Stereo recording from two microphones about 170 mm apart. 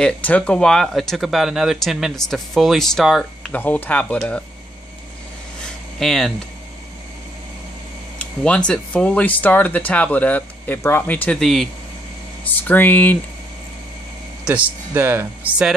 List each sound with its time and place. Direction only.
0.0 s speech: 5° left (ahead or behind)
5.6 s a sound: centre (ahead or behind)
8.5 s speech: 5° left (ahead or behind)
14.4 s speech: 10° right (ahead or behind)